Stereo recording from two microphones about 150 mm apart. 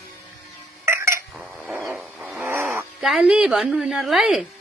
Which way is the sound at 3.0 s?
5° right (ahead or behind).